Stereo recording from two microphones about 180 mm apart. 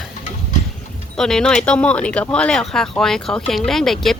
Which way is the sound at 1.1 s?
5° left (ahead or behind).